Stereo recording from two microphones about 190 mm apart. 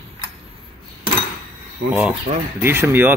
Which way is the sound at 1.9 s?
5° right (ahead or behind).